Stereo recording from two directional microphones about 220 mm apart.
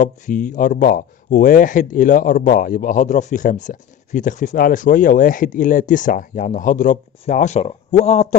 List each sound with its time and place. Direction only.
0.0 s speech: 35° left (ahead or behind)